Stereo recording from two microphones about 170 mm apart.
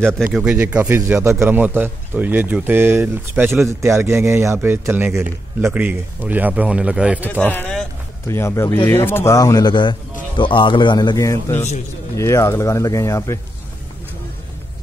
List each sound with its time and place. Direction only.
0.3 s a man's voice: 5° right (ahead or behind)
7.4 s a man's voice: 10° left (ahead or behind)